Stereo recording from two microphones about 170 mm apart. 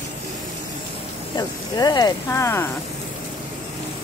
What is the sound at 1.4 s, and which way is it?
Speech, 25° left (ahead or behind).